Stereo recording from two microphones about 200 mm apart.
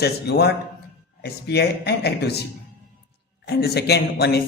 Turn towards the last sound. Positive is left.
turn(degrees=55)  # may be behind; listen again after turning